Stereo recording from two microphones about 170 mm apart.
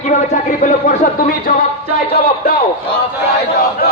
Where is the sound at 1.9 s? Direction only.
65° left (ahead or behind).